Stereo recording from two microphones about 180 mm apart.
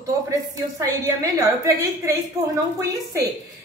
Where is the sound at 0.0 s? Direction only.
20° right (ahead or behind).